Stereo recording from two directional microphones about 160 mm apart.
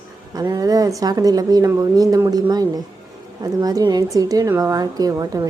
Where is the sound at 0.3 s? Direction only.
25° right (ahead or behind).